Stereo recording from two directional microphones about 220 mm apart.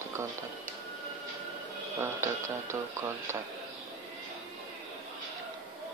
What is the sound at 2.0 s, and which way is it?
Speech, 10° right (ahead or behind).